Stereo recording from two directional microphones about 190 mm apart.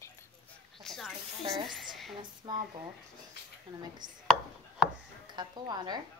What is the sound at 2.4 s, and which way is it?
Speech, 15° right (ahead or behind).